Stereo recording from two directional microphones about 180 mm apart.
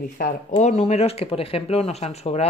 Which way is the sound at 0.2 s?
40° left (ahead or behind).